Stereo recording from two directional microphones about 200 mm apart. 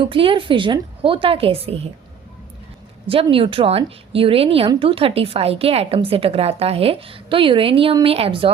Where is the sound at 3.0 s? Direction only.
25° right (ahead or behind).